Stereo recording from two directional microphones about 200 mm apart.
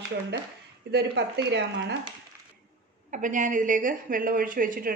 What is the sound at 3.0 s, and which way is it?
A woman's voice, 40° right (ahead or behind).